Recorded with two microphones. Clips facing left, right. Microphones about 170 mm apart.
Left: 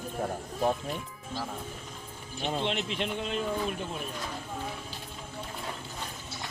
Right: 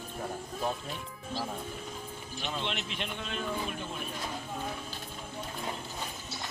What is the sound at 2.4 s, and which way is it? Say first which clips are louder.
Speech: left 6 dB; 35° left (ahead or behind).